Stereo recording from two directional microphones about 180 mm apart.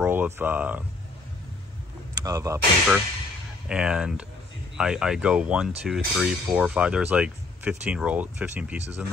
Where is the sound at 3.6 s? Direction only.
5° right (ahead or behind).